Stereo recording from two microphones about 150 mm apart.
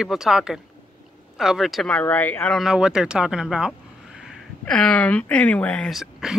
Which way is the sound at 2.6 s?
5° right (ahead or behind).